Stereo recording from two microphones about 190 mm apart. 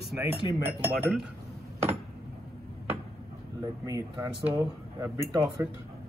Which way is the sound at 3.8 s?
15° right (ahead or behind).